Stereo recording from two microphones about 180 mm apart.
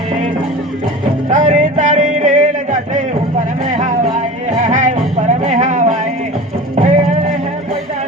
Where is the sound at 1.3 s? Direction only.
45° right (ahead or behind).